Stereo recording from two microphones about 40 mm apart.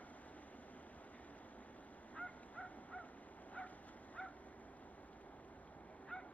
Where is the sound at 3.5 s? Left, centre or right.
Left.